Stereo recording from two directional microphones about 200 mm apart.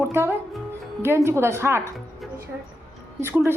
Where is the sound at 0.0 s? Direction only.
10° right (ahead or behind).